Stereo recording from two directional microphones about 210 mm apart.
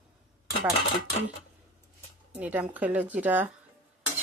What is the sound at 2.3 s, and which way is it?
A woman's voice, 5° right (ahead or behind).